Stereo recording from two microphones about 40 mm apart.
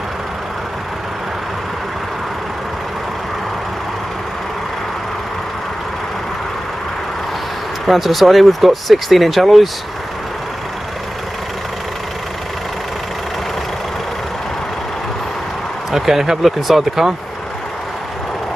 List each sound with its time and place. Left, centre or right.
7.8 s speech: centre
15.9 s speech: centre